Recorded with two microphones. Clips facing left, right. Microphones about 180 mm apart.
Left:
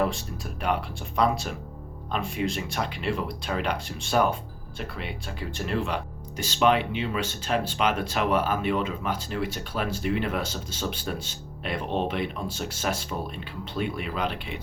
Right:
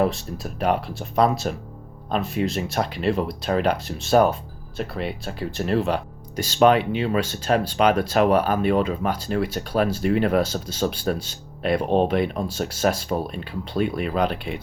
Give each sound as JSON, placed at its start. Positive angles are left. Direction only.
{"t": 0.6, "sound": "speech", "side_deg": -40}